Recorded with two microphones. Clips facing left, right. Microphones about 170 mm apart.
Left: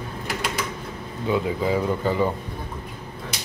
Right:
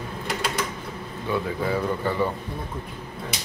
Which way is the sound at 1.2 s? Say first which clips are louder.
Left 3 dB; 15° left (ahead or behind).